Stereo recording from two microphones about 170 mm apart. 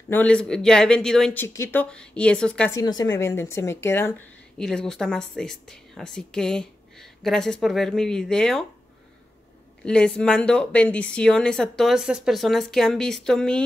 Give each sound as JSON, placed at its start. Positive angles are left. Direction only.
{"t": 0.1, "sound": "speech", "side_deg": 5}
{"t": 2.7, "sound": "a woman's voice", "side_deg": 20}
{"t": 4.6, "sound": "speech", "side_deg": 5}
{"t": 9.8, "sound": "speech", "side_deg": 5}